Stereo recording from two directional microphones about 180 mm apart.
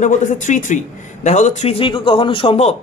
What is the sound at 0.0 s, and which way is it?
A man's voice, 45° left (ahead or behind).